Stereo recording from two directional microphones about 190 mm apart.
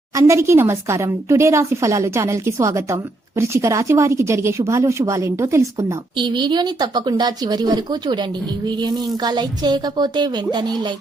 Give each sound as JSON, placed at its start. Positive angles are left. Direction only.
{"t": 0.2, "sound": "a woman's voice", "side_deg": -15}